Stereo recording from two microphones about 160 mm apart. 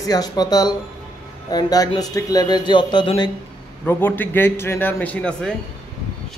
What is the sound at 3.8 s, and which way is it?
Speech, 10° left (ahead or behind).